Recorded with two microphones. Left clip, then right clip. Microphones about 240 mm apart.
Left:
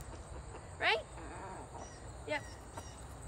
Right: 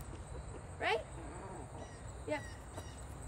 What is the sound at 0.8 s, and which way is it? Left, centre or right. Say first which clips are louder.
Speech: left 3 dB; centre.